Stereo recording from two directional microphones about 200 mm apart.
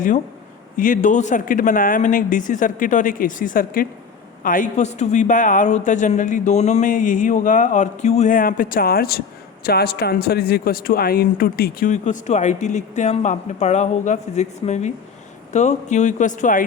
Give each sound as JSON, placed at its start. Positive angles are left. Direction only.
{"t": 0.8, "sound": "speech", "side_deg": 40}